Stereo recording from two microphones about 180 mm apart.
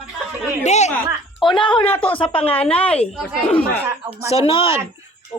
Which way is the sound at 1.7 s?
10° left (ahead or behind).